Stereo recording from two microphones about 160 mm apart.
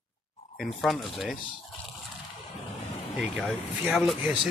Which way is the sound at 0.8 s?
Centre (ahead or behind).